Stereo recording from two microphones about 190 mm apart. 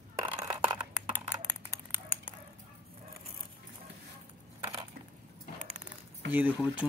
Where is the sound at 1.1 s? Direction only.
10° left (ahead or behind).